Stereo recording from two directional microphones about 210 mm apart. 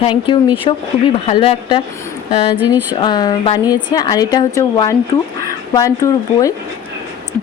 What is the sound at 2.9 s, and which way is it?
Speech, 20° left (ahead or behind).